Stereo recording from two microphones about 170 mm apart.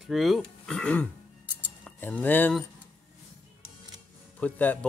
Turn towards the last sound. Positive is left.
turn(degrees=10)  # may be behind; listen again after turning